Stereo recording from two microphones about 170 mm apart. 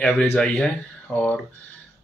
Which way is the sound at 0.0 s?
5° left (ahead or behind).